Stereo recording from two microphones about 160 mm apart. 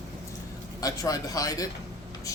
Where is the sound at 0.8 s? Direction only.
20° left (ahead or behind).